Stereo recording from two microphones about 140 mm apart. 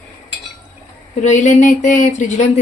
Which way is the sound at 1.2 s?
60° left (ahead or behind).